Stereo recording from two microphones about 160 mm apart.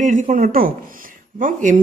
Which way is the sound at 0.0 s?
50° right (ahead or behind).